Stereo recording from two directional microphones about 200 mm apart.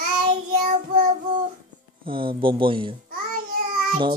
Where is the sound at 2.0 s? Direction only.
25° right (ahead or behind).